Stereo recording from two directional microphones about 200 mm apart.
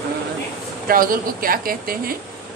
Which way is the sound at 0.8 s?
45° right (ahead or behind).